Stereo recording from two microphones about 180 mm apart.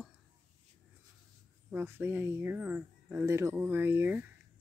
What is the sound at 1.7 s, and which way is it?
Speech, 10° right (ahead or behind).